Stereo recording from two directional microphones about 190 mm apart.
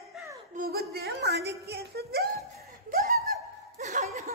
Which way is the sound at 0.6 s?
50° right (ahead or behind).